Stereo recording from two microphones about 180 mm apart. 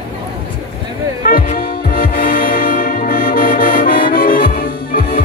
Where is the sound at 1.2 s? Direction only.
50° left (ahead or behind).